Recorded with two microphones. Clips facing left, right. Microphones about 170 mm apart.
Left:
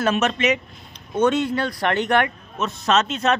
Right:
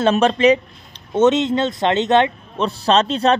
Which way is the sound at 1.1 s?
20° right (ahead or behind).